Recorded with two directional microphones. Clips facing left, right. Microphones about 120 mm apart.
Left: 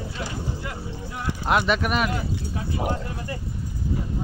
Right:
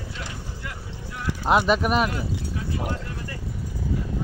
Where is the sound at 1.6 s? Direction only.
35° right (ahead or behind).